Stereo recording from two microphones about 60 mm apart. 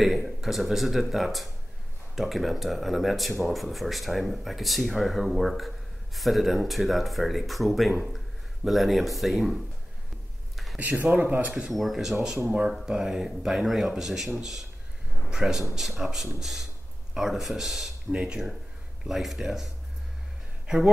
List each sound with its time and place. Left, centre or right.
0.0 s speech: centre
10.5 s a sound: centre
10.8 s speech: right
11.7 s speech: centre